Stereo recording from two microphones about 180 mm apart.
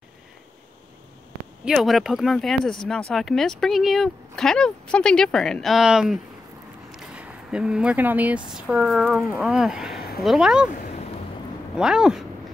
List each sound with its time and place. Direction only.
1.6 s speech: centre (ahead or behind)
7.0 s a sound: 5° right (ahead or behind)
8.5 s speech: 5° right (ahead or behind)
9.9 s a sound: 60° left (ahead or behind)
10.2 s speech: 5° right (ahead or behind)
11.7 s speech: 5° right (ahead or behind)